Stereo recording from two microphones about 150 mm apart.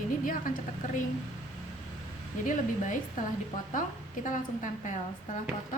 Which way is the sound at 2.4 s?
60° left (ahead or behind).